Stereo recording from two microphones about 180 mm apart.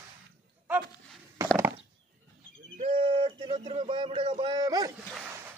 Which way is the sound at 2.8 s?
30° right (ahead or behind).